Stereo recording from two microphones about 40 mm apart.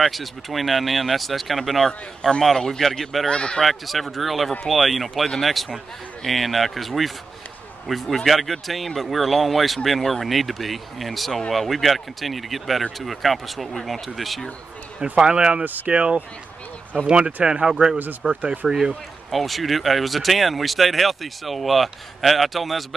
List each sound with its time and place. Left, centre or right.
0.0 s speech: centre
1.9 s a man's voice: centre
3.3 s speech: left
3.6 s speech: centre
15.1 s speech: right
15.6 s speech: right
15.9 s speech: right
18.2 s speech: right
18.7 s speech: centre
19.3 s speech: centre